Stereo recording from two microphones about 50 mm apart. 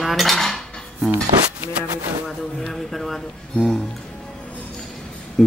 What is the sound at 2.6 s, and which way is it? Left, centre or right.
Cutlery, centre.